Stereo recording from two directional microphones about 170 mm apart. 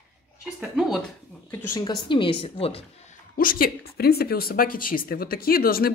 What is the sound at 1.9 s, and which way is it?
A woman's voice, 30° left (ahead or behind).